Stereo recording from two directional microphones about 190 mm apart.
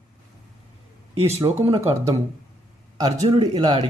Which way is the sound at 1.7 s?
15° right (ahead or behind).